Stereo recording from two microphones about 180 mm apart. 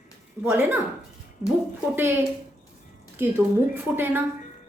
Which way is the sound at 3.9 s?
10° right (ahead or behind).